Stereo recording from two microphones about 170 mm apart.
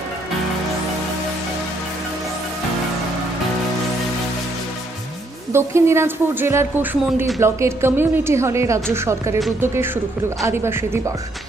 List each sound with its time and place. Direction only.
5.5 s a woman's voice: 15° right (ahead or behind)